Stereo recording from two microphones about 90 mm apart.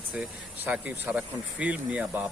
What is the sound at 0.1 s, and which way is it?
Speech, 15° right (ahead or behind).